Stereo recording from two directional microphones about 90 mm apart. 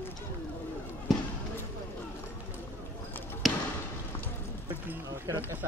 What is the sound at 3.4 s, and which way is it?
Basketball bounce, centre (ahead or behind).